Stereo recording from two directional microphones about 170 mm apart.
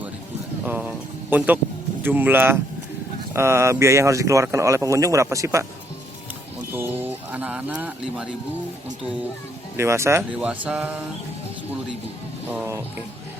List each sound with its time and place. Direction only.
0.6 s a sound: 10° right (ahead or behind)
2.0 s speech: 10° right (ahead or behind)
6.7 s speech: 10° right (ahead or behind)
9.7 s speech: 15° right (ahead or behind)